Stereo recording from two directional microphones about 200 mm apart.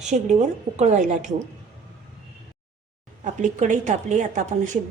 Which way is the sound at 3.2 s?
40° right (ahead or behind).